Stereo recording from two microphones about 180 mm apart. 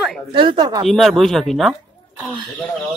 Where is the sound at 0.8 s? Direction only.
Centre (ahead or behind).